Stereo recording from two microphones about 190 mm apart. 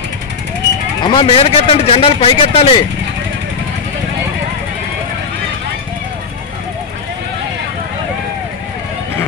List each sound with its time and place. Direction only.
1.0 s a man's voice: 25° left (ahead or behind)